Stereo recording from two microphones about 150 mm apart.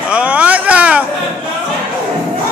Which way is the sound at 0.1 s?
10° right (ahead or behind).